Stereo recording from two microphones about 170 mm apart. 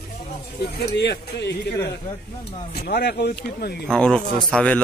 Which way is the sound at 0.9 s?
90° left.